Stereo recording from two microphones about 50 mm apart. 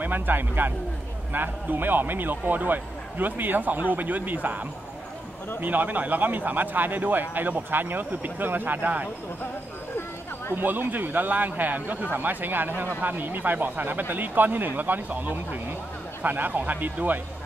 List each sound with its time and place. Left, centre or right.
0.0 s a man's voice: right
5.6 s a man's voice: right
10.5 s a man's voice: right